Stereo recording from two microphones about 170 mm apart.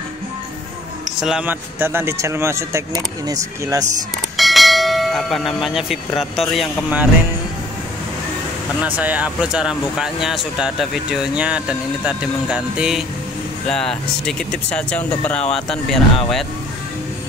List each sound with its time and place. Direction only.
1.2 s speech: 5° right (ahead or behind)
4.4 s church bell: centre (ahead or behind)
6.5 s speech: 5° right (ahead or behind)
8.8 s speech: 10° right (ahead or behind)